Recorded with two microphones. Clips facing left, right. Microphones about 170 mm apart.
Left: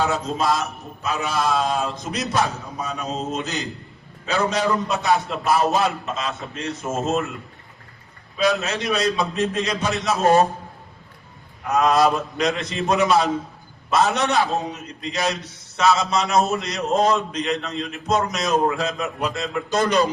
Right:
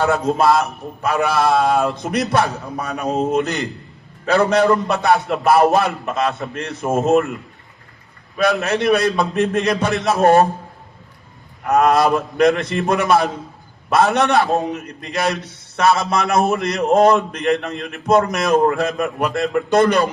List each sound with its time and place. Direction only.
0.0 s a man's voice: 60° right (ahead or behind)
8.4 s a man's voice: 55° right (ahead or behind)
11.7 s a man's voice: 55° right (ahead or behind)